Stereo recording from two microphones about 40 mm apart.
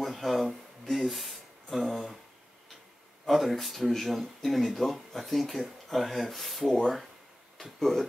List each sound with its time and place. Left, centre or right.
0.0 s a sound: centre
3.3 s speech: centre
7.8 s speech: centre